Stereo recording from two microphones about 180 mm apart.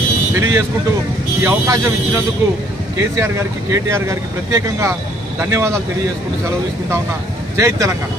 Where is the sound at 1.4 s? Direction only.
15° right (ahead or behind).